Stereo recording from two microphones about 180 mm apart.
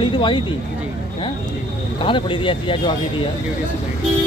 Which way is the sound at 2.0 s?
30° left (ahead or behind).